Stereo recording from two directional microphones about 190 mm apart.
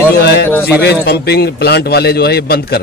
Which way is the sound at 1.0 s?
60° left (ahead or behind).